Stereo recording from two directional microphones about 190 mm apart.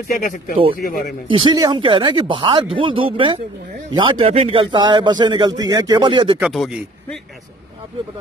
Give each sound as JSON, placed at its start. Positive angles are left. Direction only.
{"t": 0.1, "sound": "speech", "side_deg": 45}
{"t": 1.3, "sound": "speech", "side_deg": -25}
{"t": 6.4, "sound": "speech", "side_deg": 0}